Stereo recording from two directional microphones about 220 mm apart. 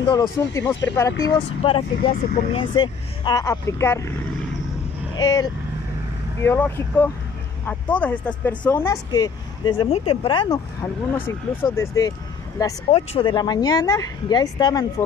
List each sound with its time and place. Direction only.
0.0 s speech: 20° left (ahead or behind)
5.1 s speech: 15° left (ahead or behind)